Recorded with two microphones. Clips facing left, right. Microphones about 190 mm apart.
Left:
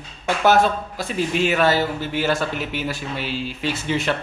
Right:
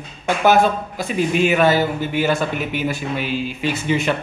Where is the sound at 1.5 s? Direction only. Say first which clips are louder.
Right 3 dB; 15° right (ahead or behind).